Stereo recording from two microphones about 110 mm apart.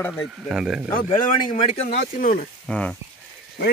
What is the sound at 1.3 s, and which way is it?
Speech, 65° left (ahead or behind).